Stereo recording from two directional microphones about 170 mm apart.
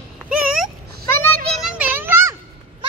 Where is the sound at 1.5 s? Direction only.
5° right (ahead or behind).